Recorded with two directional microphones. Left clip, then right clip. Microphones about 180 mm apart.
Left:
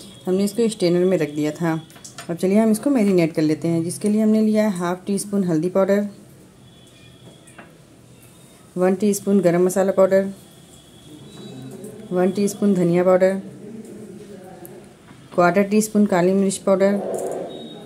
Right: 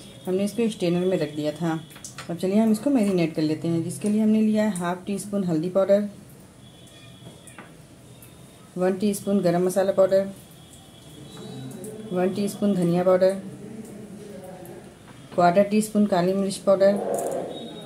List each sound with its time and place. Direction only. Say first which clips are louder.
0.2 s speech: left 5 dB; 40° left (ahead or behind)
8.7 s speech: left 5 dB; 45° left (ahead or behind)
12.2 s speech: left 5 dB; 45° left (ahead or behind)
15.3 s speech: left 2 dB; 45° left (ahead or behind)